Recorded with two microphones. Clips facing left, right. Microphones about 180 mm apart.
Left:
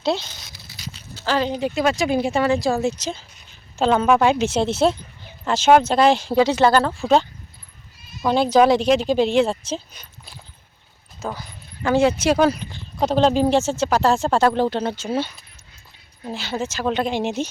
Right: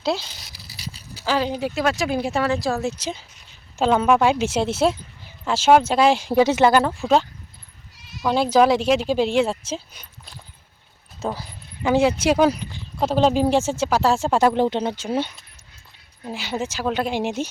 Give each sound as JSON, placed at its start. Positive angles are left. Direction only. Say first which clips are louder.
{"t": 0.2, "sound": "a sound", "louder": "left 1 dB", "side_deg": -35}
{"t": 1.1, "sound": "speech", "louder": "left 1 dB", "side_deg": -10}
{"t": 3.0, "sound": "speech", "louder": "left 1 dB", "side_deg": -15}
{"t": 3.8, "sound": "speech", "louder": "left 1 dB", "side_deg": -5}
{"t": 7.0, "sound": "speech", "louder": "left 1 dB", "side_deg": 0}
{"t": 7.9, "sound": "bleat", "louder": "right 1 dB", "side_deg": -75}
{"t": 8.3, "sound": "speech", "louder": "left 1 dB", "side_deg": -5}
{"t": 11.2, "sound": "speech", "louder": "right 2 dB", "side_deg": -30}
{"t": 11.8, "sound": "speech", "louder": "left 1 dB", "side_deg": -15}